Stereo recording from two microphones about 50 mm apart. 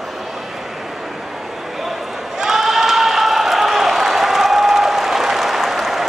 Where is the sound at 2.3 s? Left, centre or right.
Centre.